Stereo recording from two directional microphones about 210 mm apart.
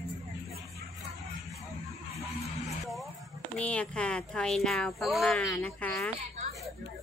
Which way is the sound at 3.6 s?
5° left (ahead or behind).